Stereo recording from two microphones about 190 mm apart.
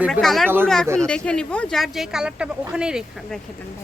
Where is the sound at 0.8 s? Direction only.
15° right (ahead or behind).